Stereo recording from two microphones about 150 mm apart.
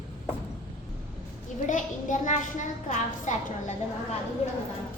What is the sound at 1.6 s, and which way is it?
A child's voice, 55° left (ahead or behind).